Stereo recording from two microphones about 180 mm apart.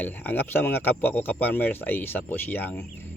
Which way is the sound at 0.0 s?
10° left (ahead or behind).